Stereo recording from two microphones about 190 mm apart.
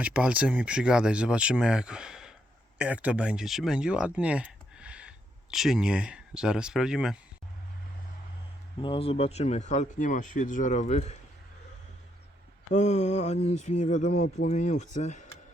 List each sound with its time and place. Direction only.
0.0 s speech: 5° right (ahead or behind)
8.8 s speech: 30° left (ahead or behind)
12.7 s speech: 40° left (ahead or behind)